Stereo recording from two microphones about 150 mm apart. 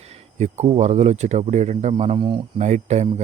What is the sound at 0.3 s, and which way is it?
Speech, 50° right (ahead or behind).